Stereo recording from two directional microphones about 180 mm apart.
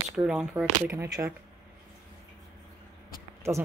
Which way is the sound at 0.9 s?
15° right (ahead or behind).